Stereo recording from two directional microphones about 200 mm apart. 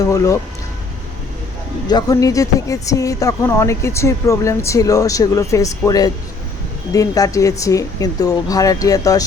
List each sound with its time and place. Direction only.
0.0 s a woman's voice: 15° left (ahead or behind)
1.9 s a woman's voice: 20° left (ahead or behind)